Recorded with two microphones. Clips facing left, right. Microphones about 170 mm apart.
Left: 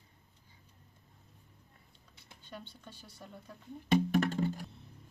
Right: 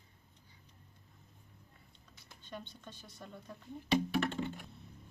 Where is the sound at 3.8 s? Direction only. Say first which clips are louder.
Left 3 dB; 45° left (ahead or behind).